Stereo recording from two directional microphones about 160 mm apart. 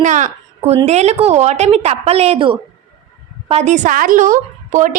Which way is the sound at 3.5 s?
50° right (ahead or behind).